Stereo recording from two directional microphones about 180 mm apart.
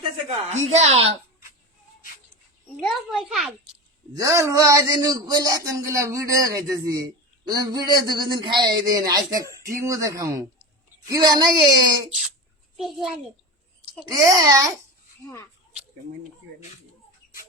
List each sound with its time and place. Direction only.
0.3 s a woman's voice: 40° right (ahead or behind)
2.8 s a child's voice: centre (ahead or behind)
4.2 s speech: 15° right (ahead or behind)
12.7 s a child's voice: centre (ahead or behind)
14.1 s speech: 20° right (ahead or behind)
15.2 s speech: 15° left (ahead or behind)